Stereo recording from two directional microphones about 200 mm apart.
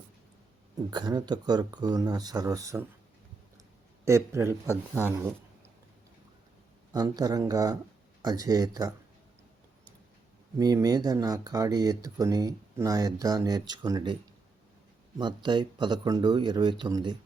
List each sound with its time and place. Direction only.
0.9 s speech: 20° right (ahead or behind)
4.0 s speech: 15° right (ahead or behind)
5.0 s a sound: 10° right (ahead or behind)
6.9 s speech: 20° right (ahead or behind)
10.6 s speech: 20° right (ahead or behind)
15.2 s speech: 25° right (ahead or behind)